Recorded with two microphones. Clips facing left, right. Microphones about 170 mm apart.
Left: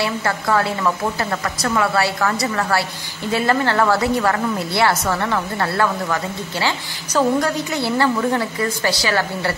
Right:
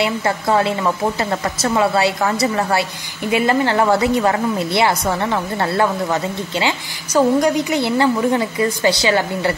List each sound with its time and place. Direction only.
0.0 s a woman's voice: 20° right (ahead or behind)